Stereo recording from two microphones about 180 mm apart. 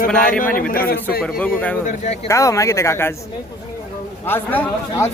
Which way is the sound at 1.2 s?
5° left (ahead or behind).